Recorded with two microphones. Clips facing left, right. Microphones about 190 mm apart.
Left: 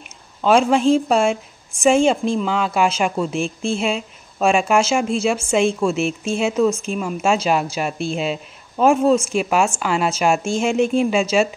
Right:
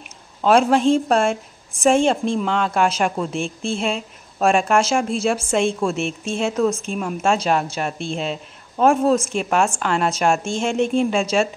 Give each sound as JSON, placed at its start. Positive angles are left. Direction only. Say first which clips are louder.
{"t": 0.4, "sound": "a woman's voice", "louder": "even", "side_deg": 0}